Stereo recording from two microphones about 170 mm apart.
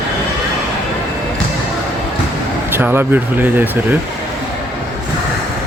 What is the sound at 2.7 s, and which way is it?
Speech, 10° right (ahead or behind).